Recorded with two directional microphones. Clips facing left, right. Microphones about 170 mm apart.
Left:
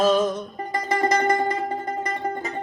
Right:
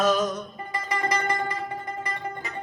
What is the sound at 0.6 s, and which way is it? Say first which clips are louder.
Music: left 8 dB; 40° left (ahead or behind).